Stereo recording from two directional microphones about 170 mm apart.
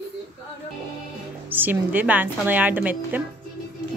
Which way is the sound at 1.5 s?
10° right (ahead or behind).